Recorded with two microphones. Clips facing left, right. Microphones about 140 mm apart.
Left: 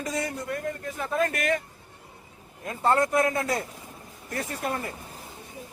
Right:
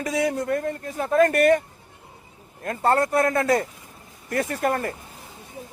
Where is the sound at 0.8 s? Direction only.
40° right (ahead or behind).